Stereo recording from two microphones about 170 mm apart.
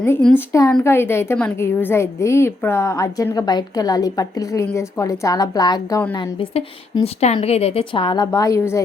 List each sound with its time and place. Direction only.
0.0 s a woman's voice: 5° left (ahead or behind); by 6.0 s 25° left (ahead or behind)
7.0 s a woman's voice: 40° left (ahead or behind); by 8.8 s 15° left (ahead or behind)